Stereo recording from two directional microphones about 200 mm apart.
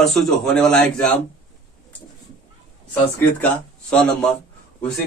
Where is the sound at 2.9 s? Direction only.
10° left (ahead or behind).